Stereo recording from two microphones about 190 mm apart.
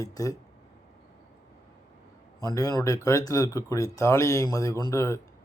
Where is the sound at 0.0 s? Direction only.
15° left (ahead or behind).